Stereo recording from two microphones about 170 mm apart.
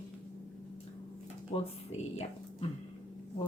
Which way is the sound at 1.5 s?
35° left (ahead or behind).